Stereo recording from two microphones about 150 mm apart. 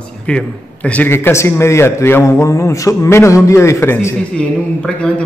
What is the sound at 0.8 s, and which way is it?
A man's voice, 10° left (ahead or behind).